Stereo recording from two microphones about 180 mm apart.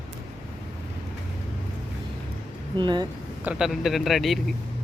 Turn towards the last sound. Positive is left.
turn(degrees=0)  # may be behind; listen again after turning